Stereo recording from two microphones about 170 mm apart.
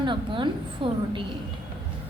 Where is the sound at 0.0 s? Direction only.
25° right (ahead or behind).